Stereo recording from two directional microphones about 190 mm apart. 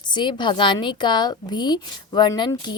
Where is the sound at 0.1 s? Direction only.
25° left (ahead or behind).